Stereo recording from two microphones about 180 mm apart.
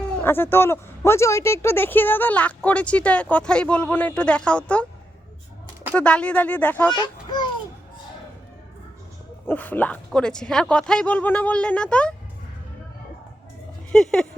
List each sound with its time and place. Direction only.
0.2 s a woman's voice: 10° left (ahead or behind)
5.9 s a woman's voice: 5° left (ahead or behind)
6.9 s a child's voice: 25° left (ahead or behind)
9.5 s a woman's voice: 10° left (ahead or behind)
13.9 s speech: 5° left (ahead or behind)